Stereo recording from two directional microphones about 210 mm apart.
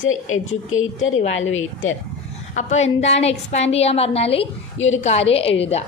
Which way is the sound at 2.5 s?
30° left (ahead or behind).